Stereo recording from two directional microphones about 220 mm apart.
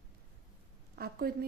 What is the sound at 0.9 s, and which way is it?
Speech, 45° right (ahead or behind).